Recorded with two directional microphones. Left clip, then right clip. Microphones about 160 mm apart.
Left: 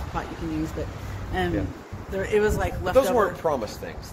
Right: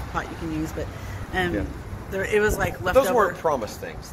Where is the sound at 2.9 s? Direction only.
Centre (ahead or behind).